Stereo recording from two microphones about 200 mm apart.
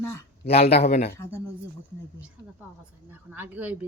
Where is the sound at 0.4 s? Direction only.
50° left (ahead or behind).